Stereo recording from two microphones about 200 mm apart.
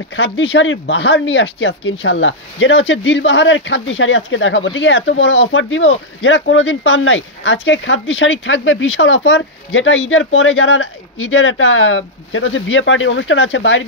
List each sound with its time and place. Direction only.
0.1 s speech: 65° left (ahead or behind)